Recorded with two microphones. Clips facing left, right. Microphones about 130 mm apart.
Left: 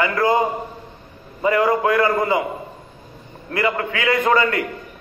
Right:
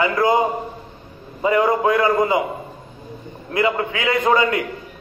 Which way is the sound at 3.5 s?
20° right (ahead or behind).